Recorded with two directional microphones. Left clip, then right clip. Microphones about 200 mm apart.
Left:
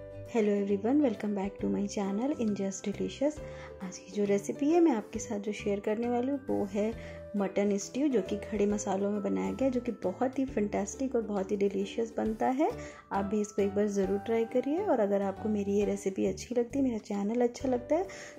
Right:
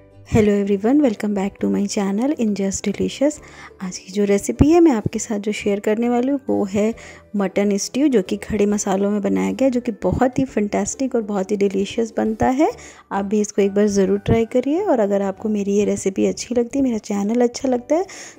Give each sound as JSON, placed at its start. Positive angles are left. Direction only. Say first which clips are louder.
{"t": 0.3, "sound": "a woman's voice", "louder": "right 12 dB", "side_deg": -50}